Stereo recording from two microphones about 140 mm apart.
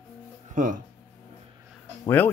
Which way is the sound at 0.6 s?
70° right (ahead or behind).